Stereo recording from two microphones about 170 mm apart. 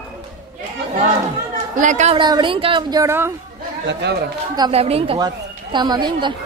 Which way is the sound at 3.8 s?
85° right.